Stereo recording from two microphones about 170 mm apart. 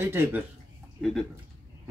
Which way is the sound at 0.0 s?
15° right (ahead or behind).